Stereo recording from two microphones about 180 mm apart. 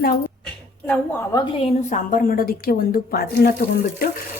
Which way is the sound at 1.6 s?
35° left (ahead or behind).